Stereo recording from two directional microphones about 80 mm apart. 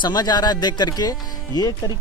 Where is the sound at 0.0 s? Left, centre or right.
Left.